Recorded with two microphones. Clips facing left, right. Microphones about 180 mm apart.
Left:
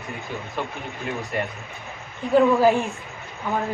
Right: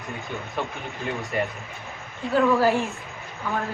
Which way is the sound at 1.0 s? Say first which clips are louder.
Right 1 dB; centre (ahead or behind).